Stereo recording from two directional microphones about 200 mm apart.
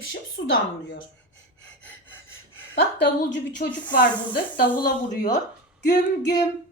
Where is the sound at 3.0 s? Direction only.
60° left (ahead or behind).